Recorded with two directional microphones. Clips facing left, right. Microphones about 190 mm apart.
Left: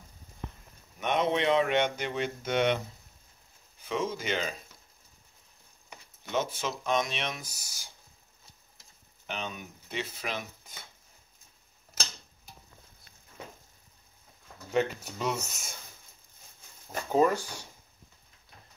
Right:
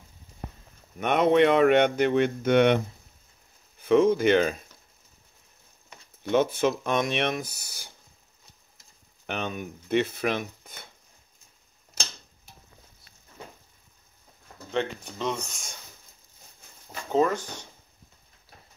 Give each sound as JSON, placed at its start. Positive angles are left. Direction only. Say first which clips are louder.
{"t": 0.9, "sound": "speech", "louder": "right 7 dB", "side_deg": -60}
{"t": 3.8, "sound": "speech", "louder": "right 13 dB", "side_deg": -55}
{"t": 6.2, "sound": "speech", "louder": "right 9 dB", "side_deg": -60}
{"t": 9.2, "sound": "speech", "louder": "right 6 dB", "side_deg": -55}
{"t": 14.7, "sound": "speech", "louder": "left 1 dB", "side_deg": 10}
{"t": 17.1, "sound": "speech", "louder": "right 1 dB", "side_deg": 10}